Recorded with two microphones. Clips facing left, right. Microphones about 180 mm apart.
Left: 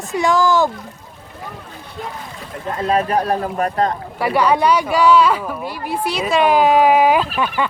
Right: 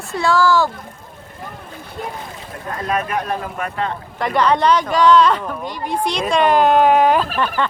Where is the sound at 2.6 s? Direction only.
25° left (ahead or behind).